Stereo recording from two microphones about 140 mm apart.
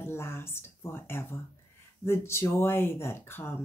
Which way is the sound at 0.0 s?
15° left (ahead or behind).